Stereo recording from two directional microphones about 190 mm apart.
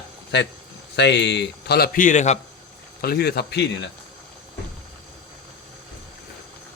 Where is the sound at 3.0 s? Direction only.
55° left (ahead or behind).